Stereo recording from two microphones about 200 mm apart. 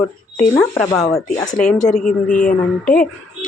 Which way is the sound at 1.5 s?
40° left (ahead or behind).